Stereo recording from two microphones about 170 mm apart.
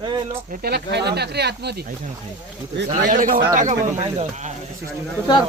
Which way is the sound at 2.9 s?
50° right (ahead or behind).